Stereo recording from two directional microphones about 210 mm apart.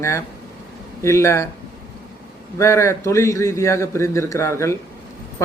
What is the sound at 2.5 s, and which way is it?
A man's voice, 15° left (ahead or behind).